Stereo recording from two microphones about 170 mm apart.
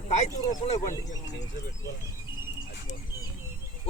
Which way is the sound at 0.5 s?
40° left (ahead or behind).